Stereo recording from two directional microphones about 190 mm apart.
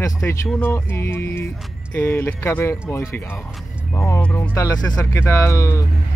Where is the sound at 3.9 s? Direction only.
15° left (ahead or behind).